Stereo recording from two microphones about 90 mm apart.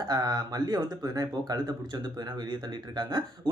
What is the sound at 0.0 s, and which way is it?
Speech, 45° right (ahead or behind).